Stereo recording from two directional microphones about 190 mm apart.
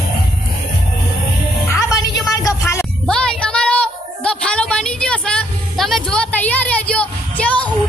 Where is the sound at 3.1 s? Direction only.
5° left (ahead or behind).